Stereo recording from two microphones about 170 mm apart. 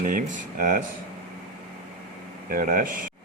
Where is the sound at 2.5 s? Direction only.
55° right (ahead or behind).